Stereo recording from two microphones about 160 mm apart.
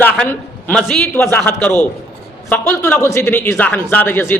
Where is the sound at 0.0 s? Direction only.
10° left (ahead or behind).